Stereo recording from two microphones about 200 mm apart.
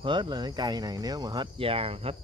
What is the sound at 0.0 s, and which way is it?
Cricket, 25° right (ahead or behind).